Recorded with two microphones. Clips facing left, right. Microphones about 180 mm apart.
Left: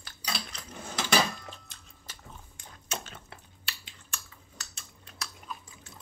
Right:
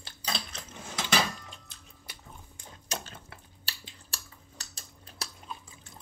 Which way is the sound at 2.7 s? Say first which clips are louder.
Even; 35° right (ahead or behind).